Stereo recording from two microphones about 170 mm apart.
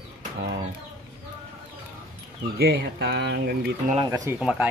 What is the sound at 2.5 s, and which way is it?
Speech, 70° right (ahead or behind).